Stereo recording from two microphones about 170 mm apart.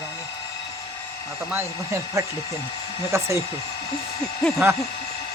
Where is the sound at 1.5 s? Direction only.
15° right (ahead or behind).